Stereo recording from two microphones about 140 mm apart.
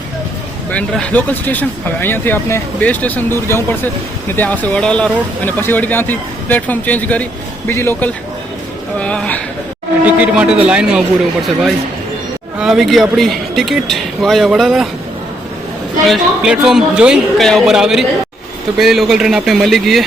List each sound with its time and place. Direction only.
0.7 s speech: 10° left (ahead or behind)
10.1 s a man's voice: 10° right (ahead or behind)
12.5 s speech: 5° right (ahead or behind)
16.0 s speech: 5° right (ahead or behind)